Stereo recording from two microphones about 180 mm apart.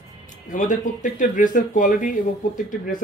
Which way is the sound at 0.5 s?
45° left (ahead or behind).